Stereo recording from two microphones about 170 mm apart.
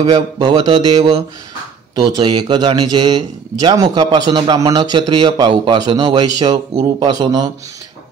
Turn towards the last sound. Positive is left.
turn(degrees=-25)  # may be behind; listen again after turning